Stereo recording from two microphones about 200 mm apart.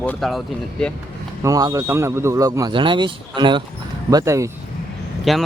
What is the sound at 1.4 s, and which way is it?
Speech, 15° right (ahead or behind).